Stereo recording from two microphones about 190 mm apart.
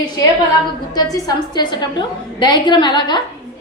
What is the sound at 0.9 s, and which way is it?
A woman's voice, 20° left (ahead or behind).